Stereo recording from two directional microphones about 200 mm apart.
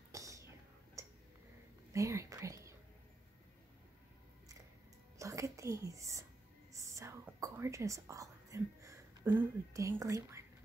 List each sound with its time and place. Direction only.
0.1 s whispering: 15° right (ahead or behind)
1.0 s a sound: 15° right (ahead or behind)
1.9 s speech: 15° right (ahead or behind)
5.2 s whispering: 15° right (ahead or behind)